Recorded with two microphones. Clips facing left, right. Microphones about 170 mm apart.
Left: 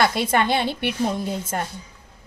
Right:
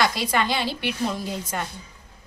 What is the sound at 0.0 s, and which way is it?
A woman's voice, 55° left (ahead or behind).